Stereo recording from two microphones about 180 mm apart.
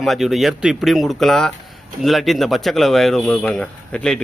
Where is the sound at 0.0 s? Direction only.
Centre (ahead or behind).